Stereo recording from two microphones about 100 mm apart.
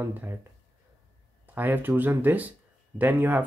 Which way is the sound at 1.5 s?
20° right (ahead or behind).